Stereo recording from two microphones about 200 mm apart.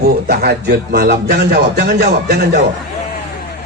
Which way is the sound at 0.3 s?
50° right (ahead or behind).